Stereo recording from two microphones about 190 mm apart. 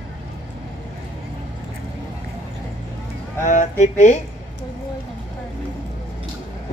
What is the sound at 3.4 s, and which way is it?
Speech, 40° left (ahead or behind).